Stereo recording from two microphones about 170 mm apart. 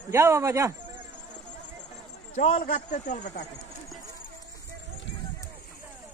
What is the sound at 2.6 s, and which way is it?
Speech, 50° left (ahead or behind).